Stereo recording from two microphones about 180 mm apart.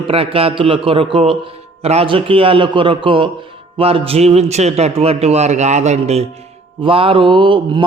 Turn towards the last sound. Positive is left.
turn(degrees=-25)  # may be behind; listen again after turning